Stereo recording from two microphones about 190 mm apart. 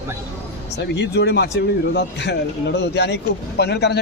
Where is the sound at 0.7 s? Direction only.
65° left (ahead or behind).